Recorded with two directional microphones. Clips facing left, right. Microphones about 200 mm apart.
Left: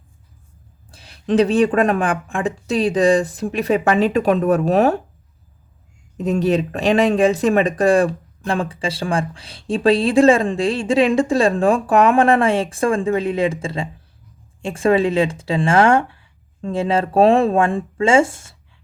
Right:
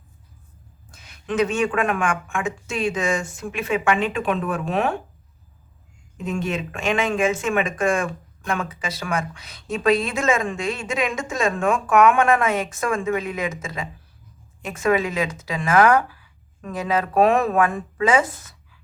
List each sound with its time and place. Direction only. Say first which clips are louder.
0.9 s speech: left 8 dB; 35° left (ahead or behind)
6.1 s speech: left 8 dB; 40° left (ahead or behind)